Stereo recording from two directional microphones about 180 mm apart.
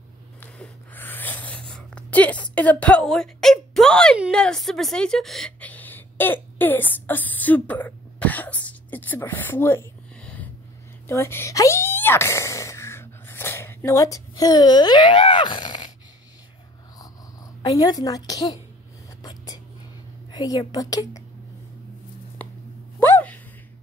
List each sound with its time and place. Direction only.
0.4 s writing: 10° left (ahead or behind)
4.2 s a woman's voice: 5° left (ahead or behind)
8.6 s a sound: 10° left (ahead or behind)
17.6 s a woman's voice: 20° left (ahead or behind)
19.2 s whispering: 20° left (ahead or behind)
20.2 s a woman's voice: 20° left (ahead or behind)
22.4 s a sound: 10° left (ahead or behind)